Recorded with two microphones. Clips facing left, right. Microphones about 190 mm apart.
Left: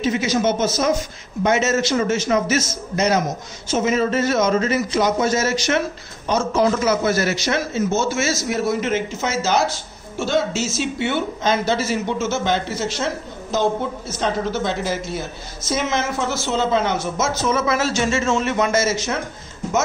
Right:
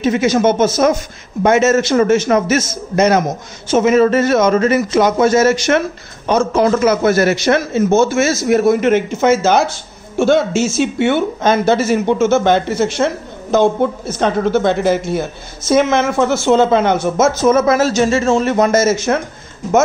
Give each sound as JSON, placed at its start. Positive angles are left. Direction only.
{"t": 0.0, "sound": "a man's voice", "side_deg": -55}